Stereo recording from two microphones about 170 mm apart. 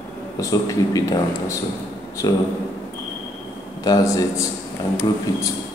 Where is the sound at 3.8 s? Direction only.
20° left (ahead or behind).